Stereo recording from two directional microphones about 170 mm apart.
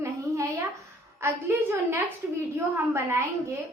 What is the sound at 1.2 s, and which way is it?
A woman's voice, 15° right (ahead or behind).